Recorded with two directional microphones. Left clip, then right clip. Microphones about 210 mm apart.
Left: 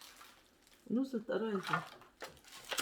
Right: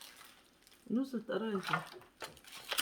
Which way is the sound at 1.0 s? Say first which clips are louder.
Left 1 dB; 5° right (ahead or behind).